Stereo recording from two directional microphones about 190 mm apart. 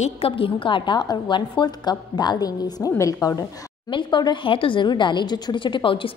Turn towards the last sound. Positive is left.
turn(degrees=25)  # may be behind; listen again after turning